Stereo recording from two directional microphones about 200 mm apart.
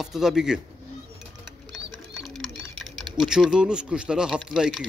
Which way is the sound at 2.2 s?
Centre (ahead or behind).